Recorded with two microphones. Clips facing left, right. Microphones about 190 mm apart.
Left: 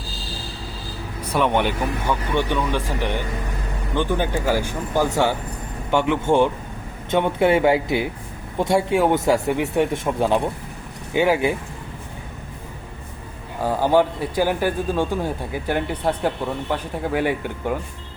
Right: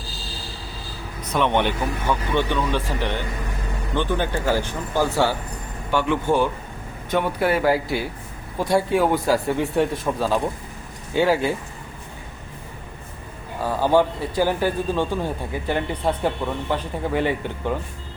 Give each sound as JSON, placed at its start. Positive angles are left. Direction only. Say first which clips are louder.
{"t": 1.3, "sound": "speech", "louder": "left 1 dB", "side_deg": 10}
{"t": 13.6, "sound": "speech", "louder": "left 1 dB", "side_deg": 15}